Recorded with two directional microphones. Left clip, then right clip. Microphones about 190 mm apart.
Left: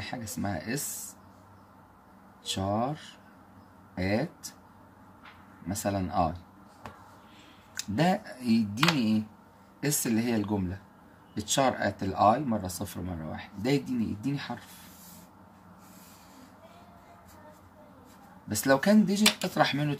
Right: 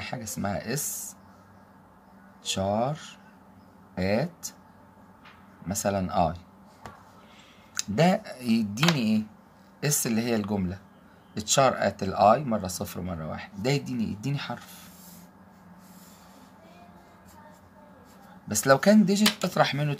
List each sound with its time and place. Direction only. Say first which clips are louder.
0.0 s speech: right 3 dB; 45° right (ahead or behind)
2.4 s speech: right 3 dB; 45° right (ahead or behind)
5.7 s speech: right 4 dB; 45° right (ahead or behind)
7.7 s speech: right 4 dB; 45° right (ahead or behind)
18.5 s speech: right 4 dB; 45° right (ahead or behind)